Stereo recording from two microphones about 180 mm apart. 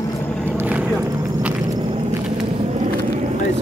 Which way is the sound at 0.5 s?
10° right (ahead or behind).